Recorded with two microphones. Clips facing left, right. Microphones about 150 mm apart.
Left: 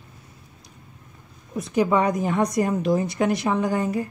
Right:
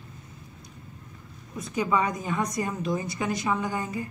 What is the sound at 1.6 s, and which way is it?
A woman's voice, 70° left (ahead or behind).